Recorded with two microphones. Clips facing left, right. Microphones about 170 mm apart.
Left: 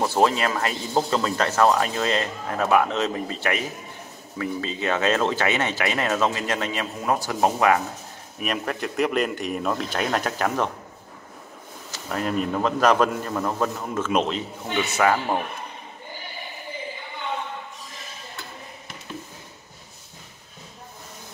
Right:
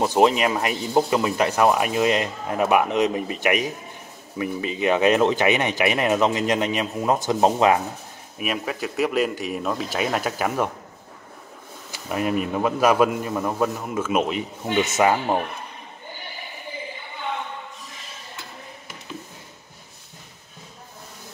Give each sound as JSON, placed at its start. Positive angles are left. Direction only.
{"t": 0.0, "sound": "speech", "side_deg": -15}
{"t": 8.4, "sound": "speech", "side_deg": -5}
{"t": 11.9, "sound": "speech", "side_deg": -10}
{"t": 14.7, "sound": "speech", "side_deg": -20}